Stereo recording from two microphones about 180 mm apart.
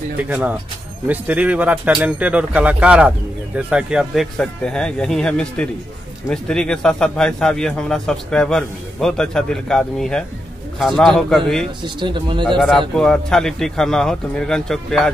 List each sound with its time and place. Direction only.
0.2 s speech: 10° right (ahead or behind)
11.8 s speech: 25° right (ahead or behind)
12.4 s speech: centre (ahead or behind)